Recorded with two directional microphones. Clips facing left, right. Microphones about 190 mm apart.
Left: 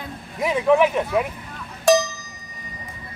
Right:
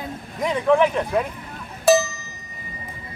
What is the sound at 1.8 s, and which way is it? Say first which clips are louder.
Cowbell: even; 5° right (ahead or behind).